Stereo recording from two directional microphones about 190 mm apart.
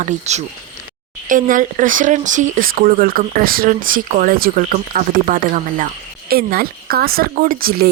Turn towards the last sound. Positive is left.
turn(degrees=-50)  # may be behind; listen again after turning